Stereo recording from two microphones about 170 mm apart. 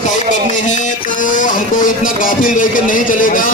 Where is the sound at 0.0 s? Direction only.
45° left (ahead or behind).